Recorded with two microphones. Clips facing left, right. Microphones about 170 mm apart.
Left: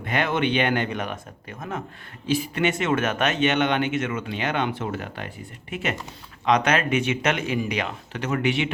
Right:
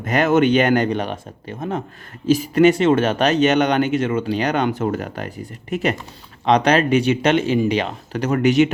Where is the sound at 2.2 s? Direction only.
40° right (ahead or behind).